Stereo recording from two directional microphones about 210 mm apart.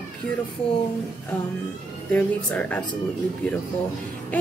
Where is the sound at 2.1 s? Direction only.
5° left (ahead or behind).